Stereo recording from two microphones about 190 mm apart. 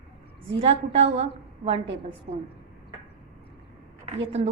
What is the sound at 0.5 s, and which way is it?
Speech, 30° right (ahead or behind).